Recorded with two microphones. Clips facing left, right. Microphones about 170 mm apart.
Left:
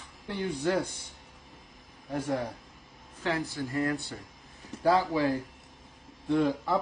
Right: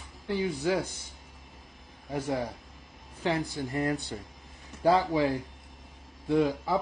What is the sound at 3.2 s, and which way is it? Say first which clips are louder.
Speech: right 2 dB; 20° right (ahead or behind).